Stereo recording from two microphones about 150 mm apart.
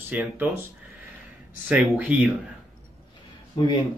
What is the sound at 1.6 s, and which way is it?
Speech, 10° right (ahead or behind).